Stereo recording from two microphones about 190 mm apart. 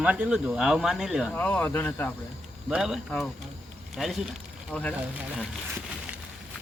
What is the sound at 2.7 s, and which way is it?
Speech, 5° right (ahead or behind).